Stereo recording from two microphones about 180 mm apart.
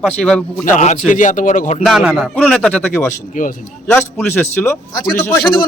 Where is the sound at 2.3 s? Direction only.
5° left (ahead or behind).